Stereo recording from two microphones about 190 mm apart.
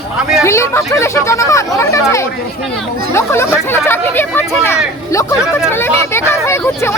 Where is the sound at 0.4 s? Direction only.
15° left (ahead or behind).